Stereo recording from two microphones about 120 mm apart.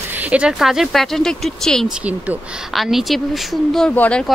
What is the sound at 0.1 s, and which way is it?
Speech, 10° right (ahead or behind).